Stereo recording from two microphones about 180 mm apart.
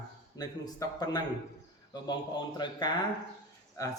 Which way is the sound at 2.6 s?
25° left (ahead or behind).